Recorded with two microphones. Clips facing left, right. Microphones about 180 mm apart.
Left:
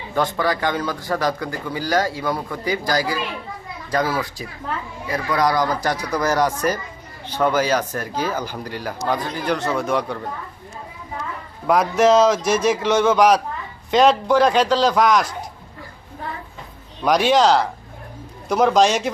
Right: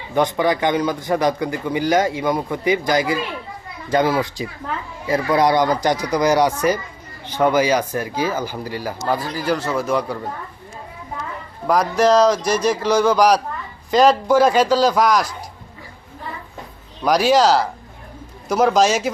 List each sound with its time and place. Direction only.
0.1 s speech: 20° right (ahead or behind); by 10.2 s centre (ahead or behind)
11.6 s speech: centre (ahead or behind)
17.0 s speech: centre (ahead or behind)